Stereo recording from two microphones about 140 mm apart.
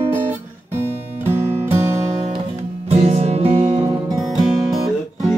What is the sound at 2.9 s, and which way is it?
Music, 50° right (ahead or behind).